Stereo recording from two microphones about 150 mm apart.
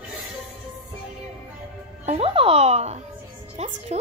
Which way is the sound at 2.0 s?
40° right (ahead or behind).